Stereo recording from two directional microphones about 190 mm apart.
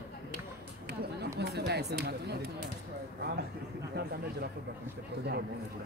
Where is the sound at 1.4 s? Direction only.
60° right (ahead or behind).